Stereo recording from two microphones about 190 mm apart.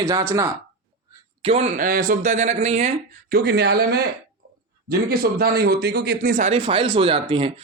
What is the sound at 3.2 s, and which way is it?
Speech, 55° right (ahead or behind).